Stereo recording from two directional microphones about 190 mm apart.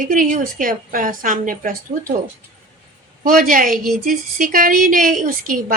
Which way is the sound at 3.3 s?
45° right (ahead or behind).